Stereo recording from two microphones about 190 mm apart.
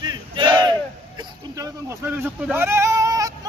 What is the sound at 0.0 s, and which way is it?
Battle cry, 25° right (ahead or behind).